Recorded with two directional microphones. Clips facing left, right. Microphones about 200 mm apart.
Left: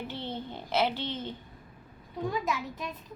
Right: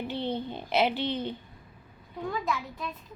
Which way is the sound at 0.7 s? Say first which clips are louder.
Right 3 dB; 15° right (ahead or behind).